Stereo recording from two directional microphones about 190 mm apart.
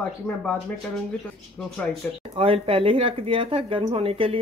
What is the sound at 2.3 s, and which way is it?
Speech, 30° right (ahead or behind).